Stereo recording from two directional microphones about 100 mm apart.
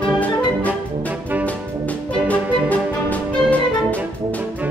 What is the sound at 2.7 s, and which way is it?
Music, 15° left (ahead or behind).